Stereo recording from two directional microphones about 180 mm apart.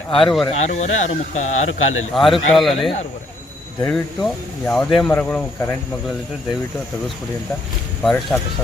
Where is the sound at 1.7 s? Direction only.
90° left.